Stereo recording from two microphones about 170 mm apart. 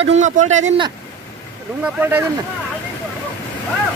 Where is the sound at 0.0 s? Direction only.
45° right (ahead or behind).